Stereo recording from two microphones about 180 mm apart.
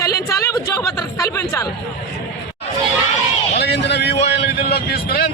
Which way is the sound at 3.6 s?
65° left (ahead or behind).